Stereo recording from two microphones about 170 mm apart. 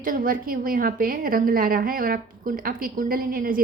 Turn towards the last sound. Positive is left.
turn(degrees=-55)  # may be behind; listen again after turning